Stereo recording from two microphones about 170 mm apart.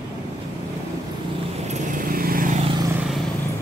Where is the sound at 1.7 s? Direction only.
50° right (ahead or behind).